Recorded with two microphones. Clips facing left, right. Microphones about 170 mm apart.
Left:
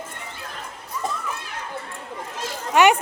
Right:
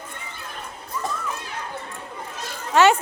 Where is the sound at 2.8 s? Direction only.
15° left (ahead or behind).